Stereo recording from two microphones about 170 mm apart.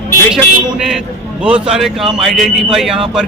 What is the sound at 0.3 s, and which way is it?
Speech, 5° right (ahead or behind).